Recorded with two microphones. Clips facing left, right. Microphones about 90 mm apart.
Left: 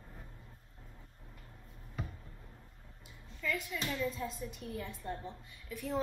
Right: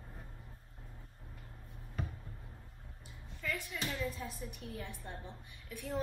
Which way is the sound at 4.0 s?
5° right (ahead or behind).